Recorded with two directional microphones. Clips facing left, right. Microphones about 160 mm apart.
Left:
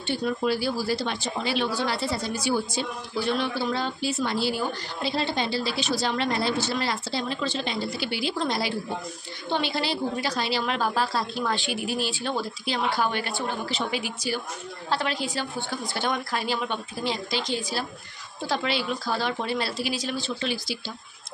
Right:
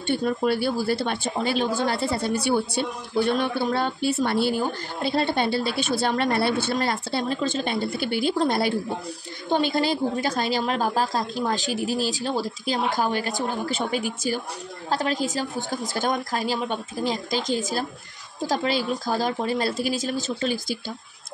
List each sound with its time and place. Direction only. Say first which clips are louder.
0.0 s speech: right 3 dB; 50° right (ahead or behind)